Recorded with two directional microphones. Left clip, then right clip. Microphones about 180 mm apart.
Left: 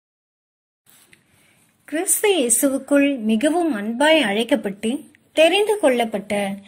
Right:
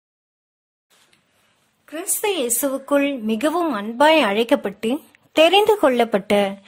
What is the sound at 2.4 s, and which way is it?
A woman's voice, 15° right (ahead or behind).